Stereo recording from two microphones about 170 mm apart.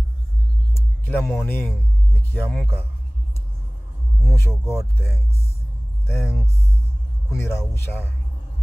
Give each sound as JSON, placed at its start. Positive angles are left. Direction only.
{"t": 0.7, "sound": "speech", "side_deg": 10}
{"t": 4.2, "sound": "speech", "side_deg": 15}